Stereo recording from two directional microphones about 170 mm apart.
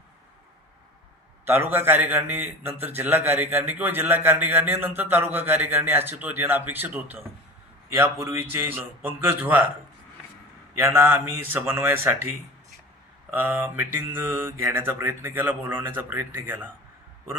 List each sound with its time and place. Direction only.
1.5 s a man's voice: 15° right (ahead or behind)
10.8 s a man's voice: 10° right (ahead or behind)
13.3 s a man's voice: 10° right (ahead or behind)